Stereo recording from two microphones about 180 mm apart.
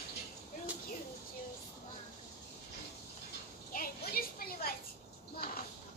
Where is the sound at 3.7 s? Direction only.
55° left (ahead or behind).